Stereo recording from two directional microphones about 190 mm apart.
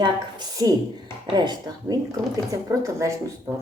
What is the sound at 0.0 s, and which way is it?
Speech, 20° right (ahead or behind).